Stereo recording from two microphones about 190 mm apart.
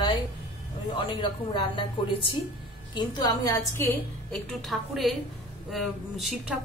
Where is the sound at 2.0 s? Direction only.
25° left (ahead or behind).